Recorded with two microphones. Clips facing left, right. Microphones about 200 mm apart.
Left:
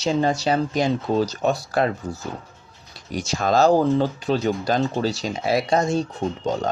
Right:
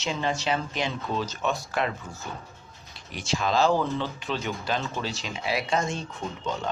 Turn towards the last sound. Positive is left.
turn(degrees=40)  # may be behind; listen again after turning